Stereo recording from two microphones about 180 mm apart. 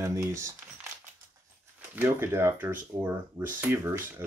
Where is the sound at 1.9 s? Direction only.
10° right (ahead or behind).